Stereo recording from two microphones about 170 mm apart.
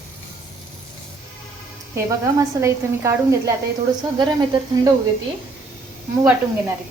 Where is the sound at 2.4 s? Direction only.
15° right (ahead or behind).